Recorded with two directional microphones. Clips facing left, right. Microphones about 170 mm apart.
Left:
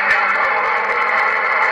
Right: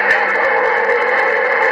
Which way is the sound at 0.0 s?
45° right (ahead or behind).